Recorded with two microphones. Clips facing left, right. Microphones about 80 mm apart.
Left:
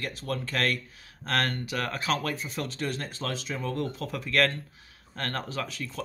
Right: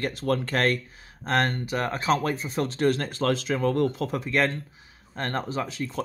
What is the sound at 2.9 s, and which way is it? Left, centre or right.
Speech, right.